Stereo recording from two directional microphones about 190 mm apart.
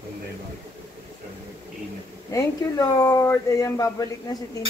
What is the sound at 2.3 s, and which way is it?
Speech, 15° left (ahead or behind).